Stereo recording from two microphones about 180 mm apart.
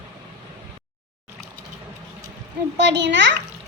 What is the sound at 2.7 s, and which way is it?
Speech, 75° right (ahead or behind).